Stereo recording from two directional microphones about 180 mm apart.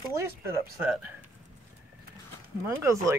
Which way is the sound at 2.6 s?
15° right (ahead or behind).